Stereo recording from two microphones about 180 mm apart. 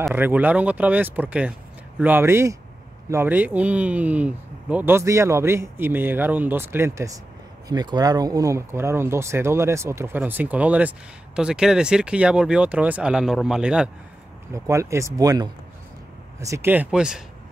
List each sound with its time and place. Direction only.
0.1 s speech: 10° right (ahead or behind)
14.5 s speech: 15° right (ahead or behind)